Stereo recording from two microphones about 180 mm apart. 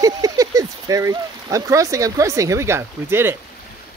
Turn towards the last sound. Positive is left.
turn(degrees=-15)  # may be behind; listen again after turning